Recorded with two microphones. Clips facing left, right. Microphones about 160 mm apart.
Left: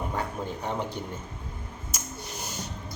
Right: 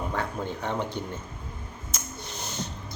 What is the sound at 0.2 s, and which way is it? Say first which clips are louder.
Speech: right 1 dB; 5° left (ahead or behind).